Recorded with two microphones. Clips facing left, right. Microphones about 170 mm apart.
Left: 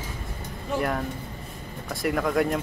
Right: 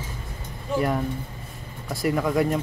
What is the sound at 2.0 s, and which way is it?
Speech, centre (ahead or behind).